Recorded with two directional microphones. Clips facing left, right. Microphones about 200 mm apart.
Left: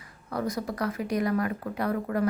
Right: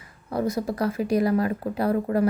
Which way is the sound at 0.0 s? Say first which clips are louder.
Right 5 dB; 25° right (ahead or behind).